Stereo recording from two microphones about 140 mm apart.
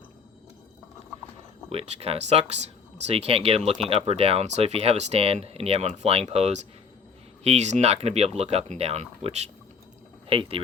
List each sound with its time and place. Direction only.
1.7 s speech: 45° right (ahead or behind)
10.2 s speech: 40° right (ahead or behind)